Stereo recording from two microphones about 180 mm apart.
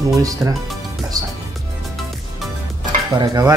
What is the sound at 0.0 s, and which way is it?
Speech, 20° right (ahead or behind).